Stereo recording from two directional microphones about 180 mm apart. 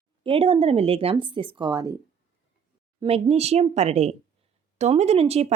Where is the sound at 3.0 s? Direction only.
35° right (ahead or behind).